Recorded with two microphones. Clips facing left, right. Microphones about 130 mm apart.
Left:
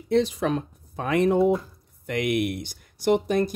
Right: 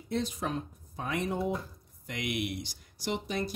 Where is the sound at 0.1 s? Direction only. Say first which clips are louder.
Left 10 dB; 85° left.